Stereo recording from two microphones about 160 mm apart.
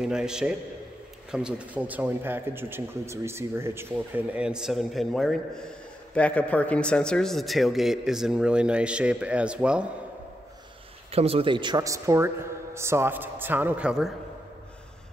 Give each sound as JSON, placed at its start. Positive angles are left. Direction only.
{"t": 0.0, "sound": "a man's voice", "side_deg": -5}
{"t": 11.1, "sound": "a man's voice", "side_deg": -40}